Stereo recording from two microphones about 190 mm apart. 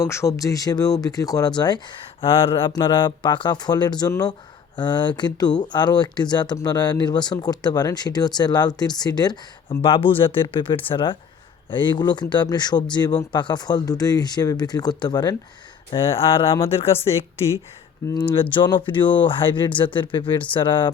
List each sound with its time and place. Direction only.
0.0 s speech: 15° left (ahead or behind); by 17.1 s 30° left (ahead or behind)
18.1 s speech: 10° left (ahead or behind)
18.3 s speech: 25° left (ahead or behind)